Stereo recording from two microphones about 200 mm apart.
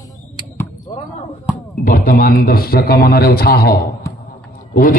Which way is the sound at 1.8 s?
45° left (ahead or behind).